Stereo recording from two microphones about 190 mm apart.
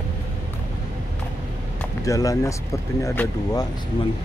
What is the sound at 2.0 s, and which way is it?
Speech, 15° left (ahead or behind).